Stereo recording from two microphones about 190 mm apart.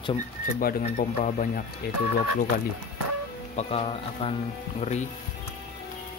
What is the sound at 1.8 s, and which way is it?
Speech, 60° left (ahead or behind).